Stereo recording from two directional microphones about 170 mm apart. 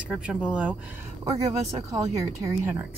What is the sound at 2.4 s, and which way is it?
Speech, 10° right (ahead or behind).